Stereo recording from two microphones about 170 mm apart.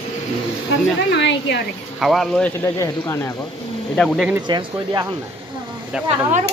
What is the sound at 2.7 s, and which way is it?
Speech, 20° left (ahead or behind).